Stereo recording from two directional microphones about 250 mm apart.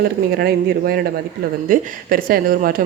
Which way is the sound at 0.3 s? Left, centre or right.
Right.